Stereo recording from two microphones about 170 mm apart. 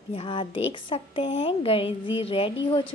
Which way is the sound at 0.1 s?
30° left (ahead or behind).